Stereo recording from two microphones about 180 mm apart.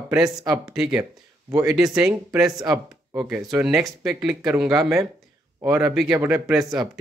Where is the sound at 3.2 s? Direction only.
20° right (ahead or behind).